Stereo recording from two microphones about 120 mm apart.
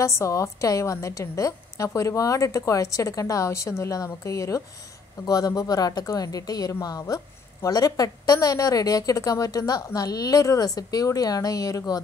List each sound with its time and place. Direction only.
0.0 s a woman's voice: 25° left (ahead or behind)